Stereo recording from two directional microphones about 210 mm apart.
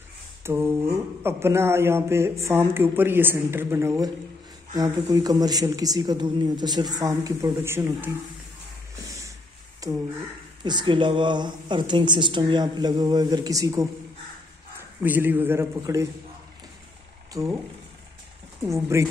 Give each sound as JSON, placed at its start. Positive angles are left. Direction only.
{"t": 0.4, "sound": "speech", "side_deg": -10}
{"t": 9.8, "sound": "speech", "side_deg": -15}
{"t": 15.0, "sound": "speech", "side_deg": -10}
{"t": 17.3, "sound": "speech", "side_deg": -15}
{"t": 18.7, "sound": "speech", "side_deg": -15}